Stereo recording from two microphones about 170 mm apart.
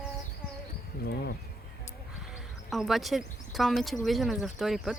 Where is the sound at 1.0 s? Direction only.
65° left (ahead or behind).